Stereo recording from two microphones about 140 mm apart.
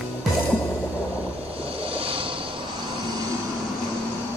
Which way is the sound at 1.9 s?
40° right (ahead or behind).